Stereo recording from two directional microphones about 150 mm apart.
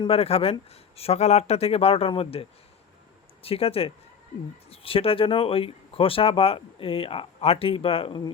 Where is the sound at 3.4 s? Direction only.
40° left (ahead or behind).